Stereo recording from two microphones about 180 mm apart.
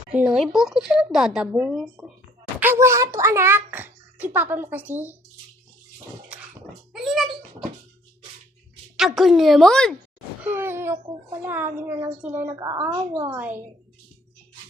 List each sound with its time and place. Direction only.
0.1 s speech: 5° right (ahead or behind)
2.6 s a child's voice: 15° right (ahead or behind)
6.9 s speech: centre (ahead or behind)
9.0 s speech: centre (ahead or behind)
10.4 s a child's voice: 10° right (ahead or behind)